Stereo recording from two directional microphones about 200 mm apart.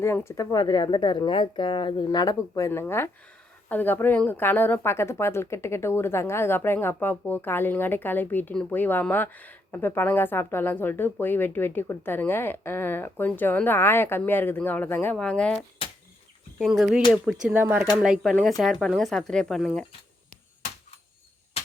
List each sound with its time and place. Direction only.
0.0 s a woman's voice: 10° left (ahead or behind)